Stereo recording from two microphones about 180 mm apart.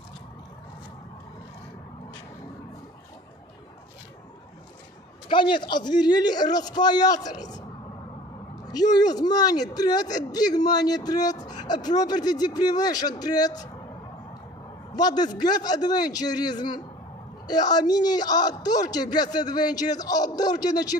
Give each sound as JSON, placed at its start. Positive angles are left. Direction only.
{"t": 5.3, "sound": "a man's voice", "side_deg": 25}
{"t": 8.7, "sound": "a man's voice", "side_deg": 20}
{"t": 15.0, "sound": "a man's voice", "side_deg": 20}